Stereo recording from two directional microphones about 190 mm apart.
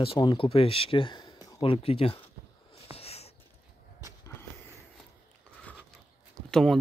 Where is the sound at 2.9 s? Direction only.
30° left (ahead or behind).